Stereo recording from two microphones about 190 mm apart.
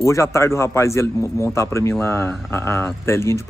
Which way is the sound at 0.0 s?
15° left (ahead or behind).